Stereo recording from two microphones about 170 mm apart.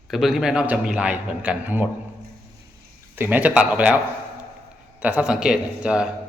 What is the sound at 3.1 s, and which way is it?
Speech, 10° right (ahead or behind).